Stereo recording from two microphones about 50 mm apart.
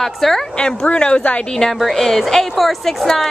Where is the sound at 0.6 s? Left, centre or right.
Left.